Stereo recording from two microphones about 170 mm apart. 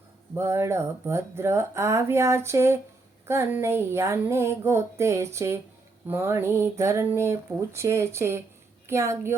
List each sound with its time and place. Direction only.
0.3 s speech: 15° right (ahead or behind)